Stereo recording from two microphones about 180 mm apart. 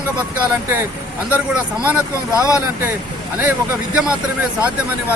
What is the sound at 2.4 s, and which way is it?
Speech, 20° left (ahead or behind).